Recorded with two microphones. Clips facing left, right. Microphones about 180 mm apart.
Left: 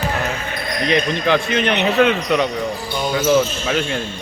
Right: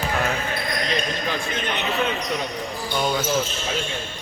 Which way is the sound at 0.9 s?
70° left (ahead or behind).